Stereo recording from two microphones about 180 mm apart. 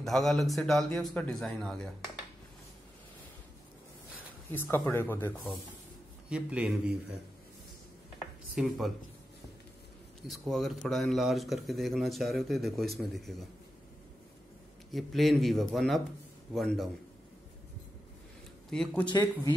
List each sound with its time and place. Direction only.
0.0 s speech: centre (ahead or behind)
4.5 s speech: 15° left (ahead or behind)
6.3 s speech: 5° right (ahead or behind)
8.5 s speech: centre (ahead or behind)
10.2 s speech: centre (ahead or behind)
14.9 s speech: centre (ahead or behind)
18.7 s speech: 5° left (ahead or behind)
19.0 s speech: 20° left (ahead or behind)